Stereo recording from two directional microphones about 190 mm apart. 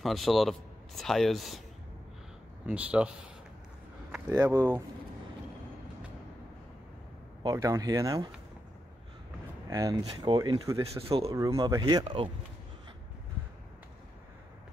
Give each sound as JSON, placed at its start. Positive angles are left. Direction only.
{"t": 0.0, "sound": "speech", "side_deg": 0}
{"t": 2.6, "sound": "speech", "side_deg": -5}
{"t": 4.3, "sound": "speech", "side_deg": -15}
{"t": 7.4, "sound": "speech", "side_deg": -15}
{"t": 9.7, "sound": "speech", "side_deg": -15}
{"t": 11.0, "sound": "speech", "side_deg": -30}
{"t": 11.3, "sound": "speech", "side_deg": -20}